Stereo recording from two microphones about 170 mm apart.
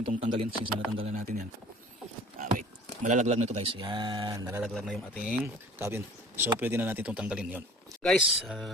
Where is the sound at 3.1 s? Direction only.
40° right (ahead or behind); by 4.6 s 20° right (ahead or behind).